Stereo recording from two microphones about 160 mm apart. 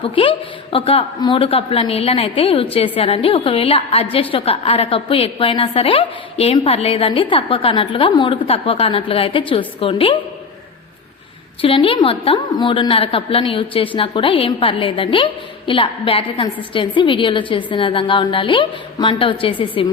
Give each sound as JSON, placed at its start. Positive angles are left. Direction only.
{"t": 0.0, "sound": "a woman's voice", "side_deg": 35}
{"t": 11.6, "sound": "a woman's voice", "side_deg": 35}